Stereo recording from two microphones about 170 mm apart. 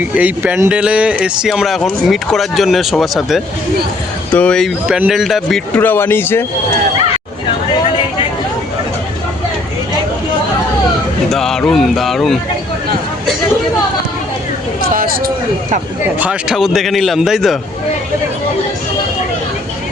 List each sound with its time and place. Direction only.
0.0 s speech: 10° right (ahead or behind); by 6.4 s 10° left (ahead or behind)
11.3 s speech: 5° left (ahead or behind)
14.8 s a sound: 60° right (ahead or behind)
16.1 s speech: 10° right (ahead or behind)